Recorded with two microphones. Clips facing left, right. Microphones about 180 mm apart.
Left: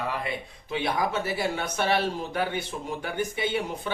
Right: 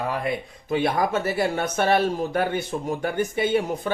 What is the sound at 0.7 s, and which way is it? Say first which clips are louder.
A man's voice: right 5 dB; 50° right (ahead or behind).